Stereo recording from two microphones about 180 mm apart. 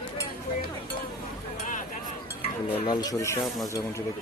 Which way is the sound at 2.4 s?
20° left (ahead or behind).